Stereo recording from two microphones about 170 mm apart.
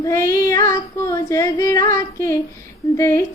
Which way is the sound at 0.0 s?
15° left (ahead or behind).